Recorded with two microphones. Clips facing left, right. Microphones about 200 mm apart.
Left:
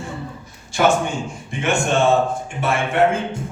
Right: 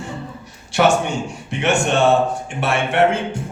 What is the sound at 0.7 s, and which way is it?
Music, 70° right (ahead or behind).